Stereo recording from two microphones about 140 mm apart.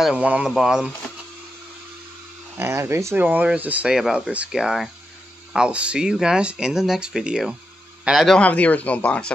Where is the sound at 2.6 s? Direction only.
20° right (ahead or behind); by 8.3 s centre (ahead or behind).